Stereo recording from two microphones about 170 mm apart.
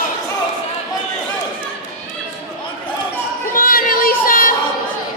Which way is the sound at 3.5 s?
55° left (ahead or behind).